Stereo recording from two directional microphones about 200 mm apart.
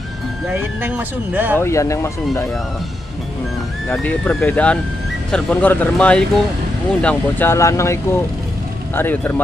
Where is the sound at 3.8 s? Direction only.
5° left (ahead or behind).